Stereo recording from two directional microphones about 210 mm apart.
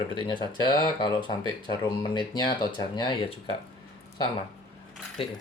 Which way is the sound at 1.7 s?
20° left (ahead or behind).